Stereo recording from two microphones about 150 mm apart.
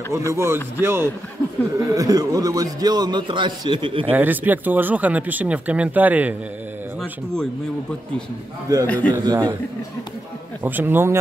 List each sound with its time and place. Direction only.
0.1 s a man's voice: 20° right (ahead or behind); by 4.1 s 35° right (ahead or behind)
4.1 s speech: 10° right (ahead or behind)
8.8 s a man's voice: 10° left (ahead or behind)
9.2 s a man's voice: 25° right (ahead or behind)
10.6 s speech: 15° right (ahead or behind)